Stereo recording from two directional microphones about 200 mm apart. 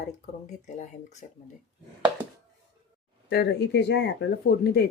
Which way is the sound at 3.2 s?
55° left (ahead or behind).